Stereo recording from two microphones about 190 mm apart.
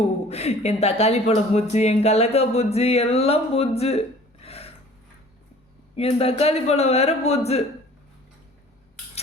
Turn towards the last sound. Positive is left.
turn(degrees=35)  # may be behind; listen again after turning